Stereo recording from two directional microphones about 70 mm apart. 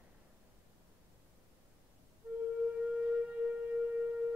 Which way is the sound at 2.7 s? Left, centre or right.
Centre.